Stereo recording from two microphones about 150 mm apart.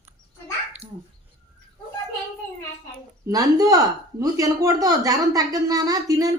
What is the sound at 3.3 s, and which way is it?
Speech, 25° right (ahead or behind).